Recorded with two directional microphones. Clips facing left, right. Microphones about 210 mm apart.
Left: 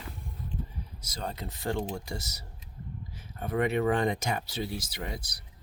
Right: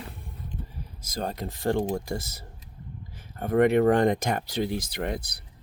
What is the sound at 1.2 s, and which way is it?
Speech, 55° right (ahead or behind).